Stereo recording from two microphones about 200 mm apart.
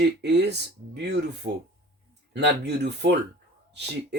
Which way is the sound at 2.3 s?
55° right (ahead or behind).